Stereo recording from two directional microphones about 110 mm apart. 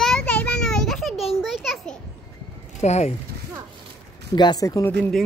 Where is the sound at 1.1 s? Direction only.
65° left (ahead or behind).